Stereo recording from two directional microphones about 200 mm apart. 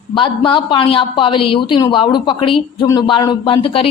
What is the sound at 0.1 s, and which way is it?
Speech, 25° left (ahead or behind).